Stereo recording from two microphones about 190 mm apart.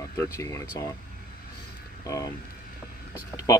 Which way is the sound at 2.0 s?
15° left (ahead or behind).